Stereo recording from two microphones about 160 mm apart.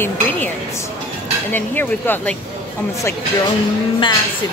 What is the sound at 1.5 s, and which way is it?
Speech, 10° left (ahead or behind).